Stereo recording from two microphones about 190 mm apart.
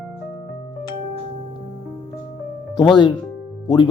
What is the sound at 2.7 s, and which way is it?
Speech, 25° left (ahead or behind).